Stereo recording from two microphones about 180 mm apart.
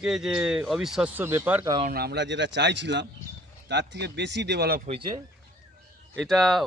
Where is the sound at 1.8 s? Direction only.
60° right (ahead or behind).